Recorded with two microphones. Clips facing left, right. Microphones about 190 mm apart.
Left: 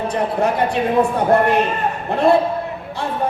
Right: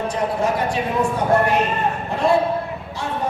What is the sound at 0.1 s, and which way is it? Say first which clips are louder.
Speech: left 3 dB; 60° left (ahead or behind).